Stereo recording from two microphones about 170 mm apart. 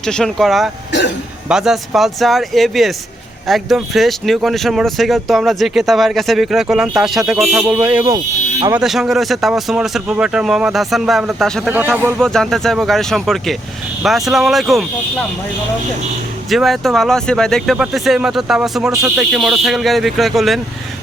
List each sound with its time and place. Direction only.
0.0 s speech: 5° left (ahead or behind)
7.3 s speech: 15° right (ahead or behind)
8.7 s speech: centre (ahead or behind)
11.7 s speech: 10° right (ahead or behind)
12.2 s speech: 5° left (ahead or behind)
16.5 s speech: centre (ahead or behind)
18.9 s speech: 15° right (ahead or behind)
19.2 s speech: 5° right (ahead or behind)